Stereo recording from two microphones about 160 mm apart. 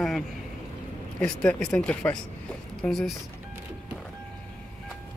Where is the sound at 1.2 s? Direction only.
5° left (ahead or behind).